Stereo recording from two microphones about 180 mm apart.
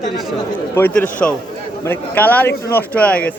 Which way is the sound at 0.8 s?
10° left (ahead or behind).